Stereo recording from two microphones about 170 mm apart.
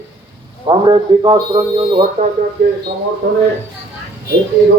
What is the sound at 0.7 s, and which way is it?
A man's voice, 25° right (ahead or behind).